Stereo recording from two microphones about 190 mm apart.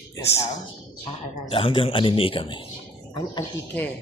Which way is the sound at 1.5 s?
30° left (ahead or behind).